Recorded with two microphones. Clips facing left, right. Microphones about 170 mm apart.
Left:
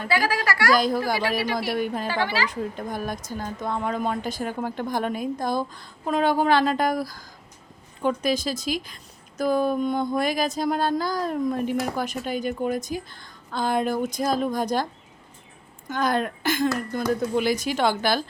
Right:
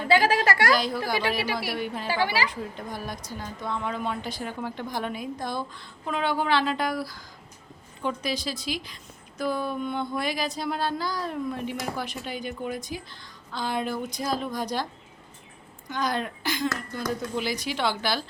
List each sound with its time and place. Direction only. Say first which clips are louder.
0.1 s a woman's voice: right 3 dB; 25° right (ahead or behind)
0.7 s speech: left 4 dB; 45° left (ahead or behind)
2.2 s a woman's voice: right 2 dB; 10° right (ahead or behind)
2.5 s speech: left 5 dB; 50° left (ahead or behind)
15.9 s speech: left 4 dB; 50° left (ahead or behind)